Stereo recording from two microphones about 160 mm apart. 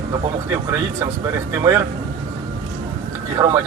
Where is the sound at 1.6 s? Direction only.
20° right (ahead or behind).